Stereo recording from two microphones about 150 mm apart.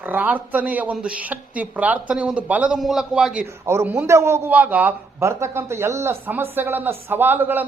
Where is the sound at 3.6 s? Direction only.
15° right (ahead or behind).